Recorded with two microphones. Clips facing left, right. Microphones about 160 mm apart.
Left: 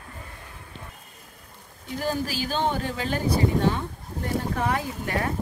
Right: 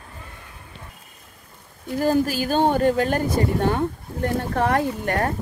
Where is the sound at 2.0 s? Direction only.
45° right (ahead or behind).